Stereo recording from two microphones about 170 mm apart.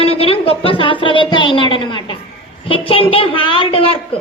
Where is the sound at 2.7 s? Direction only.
35° left (ahead or behind).